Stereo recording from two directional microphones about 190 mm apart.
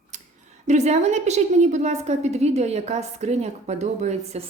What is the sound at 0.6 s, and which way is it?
A woman's voice, 35° right (ahead or behind).